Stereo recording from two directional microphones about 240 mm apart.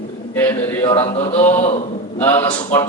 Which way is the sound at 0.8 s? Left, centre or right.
Left.